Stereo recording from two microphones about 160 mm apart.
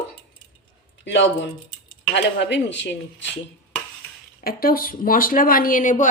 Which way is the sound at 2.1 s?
90° left.